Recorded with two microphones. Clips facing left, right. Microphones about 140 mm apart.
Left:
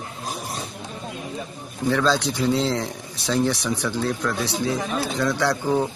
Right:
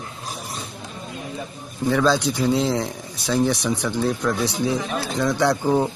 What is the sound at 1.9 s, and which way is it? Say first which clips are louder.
Speech: right 2 dB; 10° right (ahead or behind).